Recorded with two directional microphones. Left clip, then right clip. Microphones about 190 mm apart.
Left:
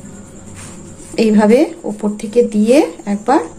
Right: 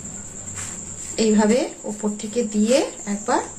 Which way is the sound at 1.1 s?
40° left (ahead or behind).